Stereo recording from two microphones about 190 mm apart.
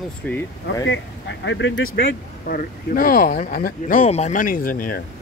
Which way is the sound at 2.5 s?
50° left (ahead or behind).